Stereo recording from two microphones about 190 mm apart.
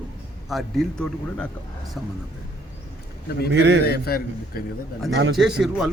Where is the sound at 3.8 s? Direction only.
55° left (ahead or behind).